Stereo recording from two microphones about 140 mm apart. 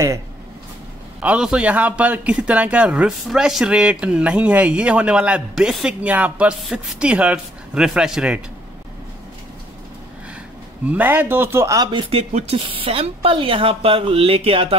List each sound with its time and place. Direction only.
1.2 s speech: 10° right (ahead or behind)
10.9 s speech: 10° right (ahead or behind)
11.9 s speech: 40° right (ahead or behind)